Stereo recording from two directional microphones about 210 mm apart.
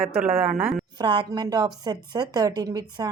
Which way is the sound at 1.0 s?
20° right (ahead or behind).